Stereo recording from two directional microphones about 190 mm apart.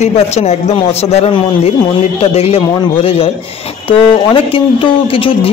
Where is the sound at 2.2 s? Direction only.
30° left (ahead or behind).